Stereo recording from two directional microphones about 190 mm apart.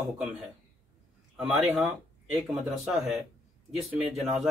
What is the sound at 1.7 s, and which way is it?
Speech, centre (ahead or behind).